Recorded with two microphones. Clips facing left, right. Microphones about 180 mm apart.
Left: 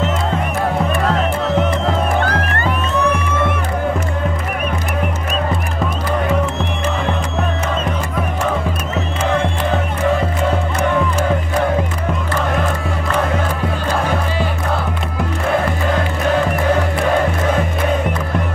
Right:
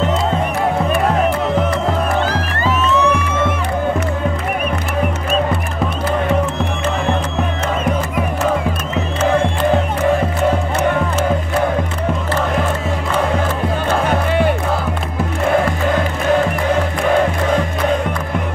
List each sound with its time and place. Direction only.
2.2 s music: 60° left (ahead or behind)